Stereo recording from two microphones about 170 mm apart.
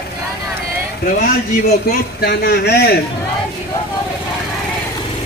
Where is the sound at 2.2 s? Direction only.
70° left (ahead or behind).